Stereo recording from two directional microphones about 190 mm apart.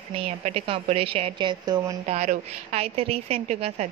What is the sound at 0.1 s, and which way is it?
A woman's voice, 30° right (ahead or behind).